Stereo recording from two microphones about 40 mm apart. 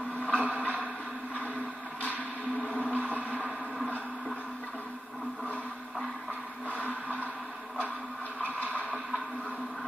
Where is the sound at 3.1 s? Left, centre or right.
Right.